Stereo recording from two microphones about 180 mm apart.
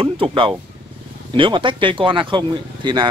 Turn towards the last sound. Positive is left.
turn(degrees=-25)  # may be behind; listen again after turning